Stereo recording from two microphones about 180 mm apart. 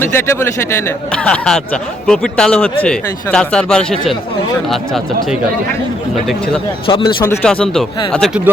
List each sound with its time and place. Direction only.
0.0 s speech: 15° left (ahead or behind)
6.8 s speech: 30° left (ahead or behind)
7.3 s speech: 5° left (ahead or behind)